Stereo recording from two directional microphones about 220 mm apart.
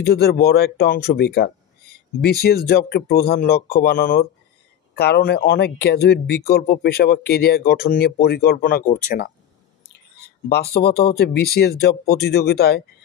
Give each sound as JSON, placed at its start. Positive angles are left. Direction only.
{"t": 0.0, "sound": "speech", "side_deg": 45}
{"t": 10.5, "sound": "speech", "side_deg": 45}